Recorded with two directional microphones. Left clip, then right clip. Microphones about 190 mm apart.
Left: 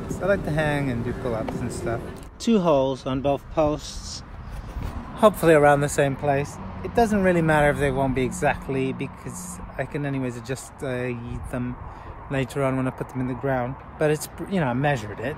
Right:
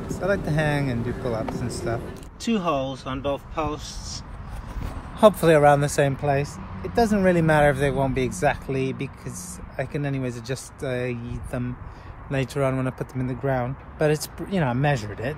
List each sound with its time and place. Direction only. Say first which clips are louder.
0.0 s speech: left 1 dB; centre (ahead or behind)
2.4 s speech: left 5 dB; 15° left (ahead or behind)
5.1 s speech: even; 10° left (ahead or behind)